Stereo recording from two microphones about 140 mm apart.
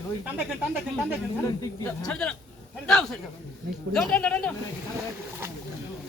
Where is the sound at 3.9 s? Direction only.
5° left (ahead or behind).